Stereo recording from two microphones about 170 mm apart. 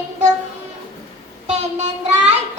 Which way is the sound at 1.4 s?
40° right (ahead or behind).